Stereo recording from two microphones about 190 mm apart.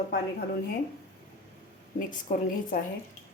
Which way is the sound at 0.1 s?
60° left (ahead or behind).